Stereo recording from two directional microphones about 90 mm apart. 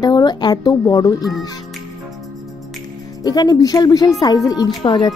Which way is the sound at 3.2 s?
45° left (ahead or behind).